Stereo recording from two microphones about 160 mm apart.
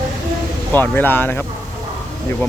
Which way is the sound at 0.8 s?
10° left (ahead or behind).